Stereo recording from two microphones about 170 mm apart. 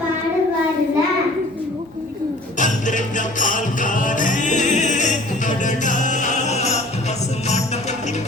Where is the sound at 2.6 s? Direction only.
45° left (ahead or behind).